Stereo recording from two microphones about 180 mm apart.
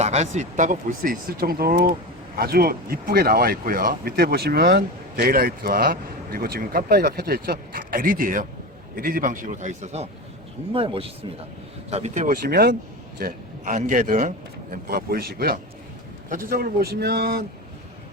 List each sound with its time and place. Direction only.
0.0 s a man's voice: 40° right (ahead or behind); by 17.4 s 60° right (ahead or behind)